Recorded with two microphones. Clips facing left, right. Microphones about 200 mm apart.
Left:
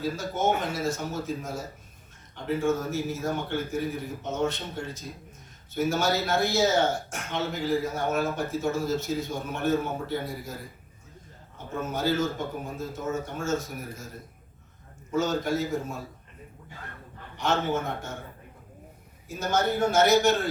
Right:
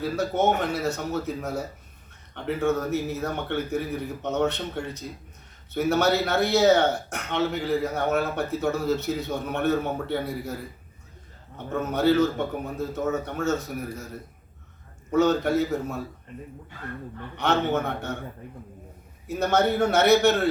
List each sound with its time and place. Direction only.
0.0 s speech: 65° right (ahead or behind)
11.5 s speech: 65° right (ahead or behind)
15.1 s speech: 65° right (ahead or behind)
17.3 s speech: 65° right (ahead or behind)
19.3 s speech: 65° right (ahead or behind)